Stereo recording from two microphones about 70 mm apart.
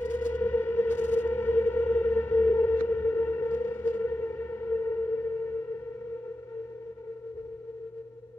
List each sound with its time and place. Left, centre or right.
0.0 s music: left